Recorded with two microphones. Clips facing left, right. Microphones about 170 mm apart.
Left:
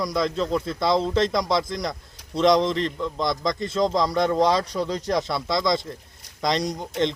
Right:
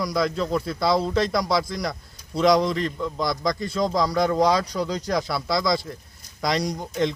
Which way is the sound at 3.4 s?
25° left (ahead or behind).